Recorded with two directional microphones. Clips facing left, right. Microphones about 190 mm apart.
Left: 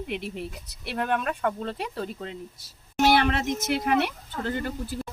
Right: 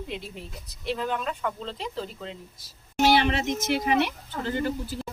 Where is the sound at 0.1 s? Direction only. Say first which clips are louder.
Left 4 dB; 70° left (ahead or behind).